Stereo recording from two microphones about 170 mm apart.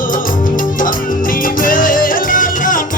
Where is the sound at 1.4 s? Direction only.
55° left (ahead or behind).